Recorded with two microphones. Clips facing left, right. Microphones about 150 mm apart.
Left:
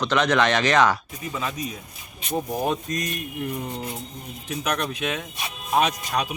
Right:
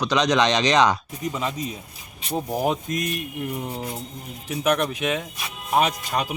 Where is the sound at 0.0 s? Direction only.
15° right (ahead or behind).